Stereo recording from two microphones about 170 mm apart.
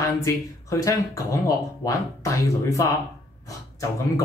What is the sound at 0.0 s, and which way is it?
Speech, 20° left (ahead or behind).